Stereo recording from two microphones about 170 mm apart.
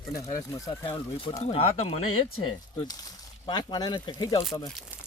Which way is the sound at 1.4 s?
35° left (ahead or behind).